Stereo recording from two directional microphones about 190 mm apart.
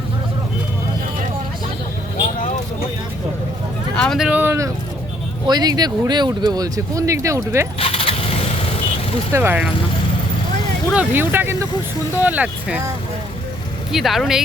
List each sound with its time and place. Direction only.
3.9 s a sound: 5° left (ahead or behind); by 4.7 s 15° right (ahead or behind)
5.5 s speech: 20° right (ahead or behind)
7.8 s vehicle: 30° left (ahead or behind)
9.3 s speech: 10° right (ahead or behind)
10.9 s speech: 10° right (ahead or behind)
13.9 s speech: centre (ahead or behind)